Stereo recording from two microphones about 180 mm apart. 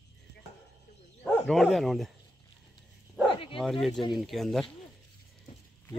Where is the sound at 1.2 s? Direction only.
Centre (ahead or behind).